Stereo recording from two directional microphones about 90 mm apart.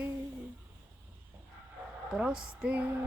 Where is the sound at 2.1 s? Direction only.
10° right (ahead or behind).